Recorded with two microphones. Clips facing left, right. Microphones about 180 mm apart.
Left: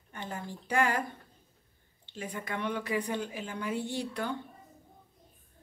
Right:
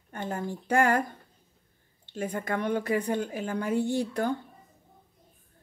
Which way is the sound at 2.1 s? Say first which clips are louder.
Right 7 dB; 50° right (ahead or behind).